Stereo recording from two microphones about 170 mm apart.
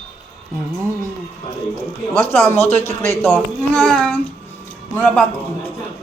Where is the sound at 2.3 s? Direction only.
10° left (ahead or behind).